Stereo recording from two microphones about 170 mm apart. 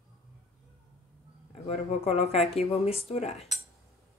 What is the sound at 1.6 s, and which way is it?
Speech, 35° left (ahead or behind).